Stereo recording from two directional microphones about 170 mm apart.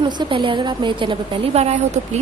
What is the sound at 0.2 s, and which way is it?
A woman's voice, 30° right (ahead or behind).